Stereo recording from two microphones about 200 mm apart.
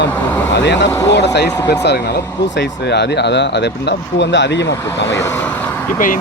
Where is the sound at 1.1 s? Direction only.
60° left (ahead or behind).